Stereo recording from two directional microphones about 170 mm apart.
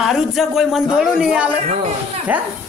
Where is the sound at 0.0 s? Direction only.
Centre (ahead or behind).